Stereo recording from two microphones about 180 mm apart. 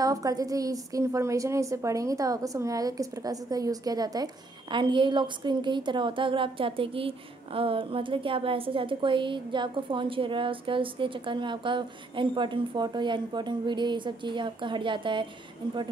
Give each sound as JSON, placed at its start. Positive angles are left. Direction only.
{"t": 0.0, "sound": "a woman's voice", "side_deg": -20}